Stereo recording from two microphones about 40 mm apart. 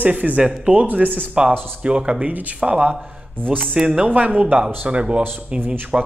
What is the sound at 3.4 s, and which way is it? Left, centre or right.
Speech, right.